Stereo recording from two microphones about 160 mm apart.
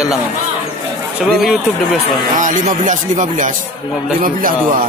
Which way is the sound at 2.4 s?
50° right (ahead or behind).